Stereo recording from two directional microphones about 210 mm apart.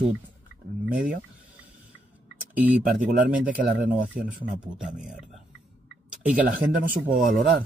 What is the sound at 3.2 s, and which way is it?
Speech, 40° right (ahead or behind).